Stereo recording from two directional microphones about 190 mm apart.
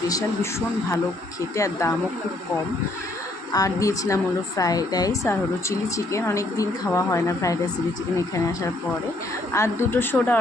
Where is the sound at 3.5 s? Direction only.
20° left (ahead or behind).